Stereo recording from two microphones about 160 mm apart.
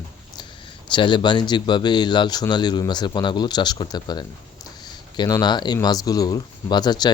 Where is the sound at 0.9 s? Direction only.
30° left (ahead or behind).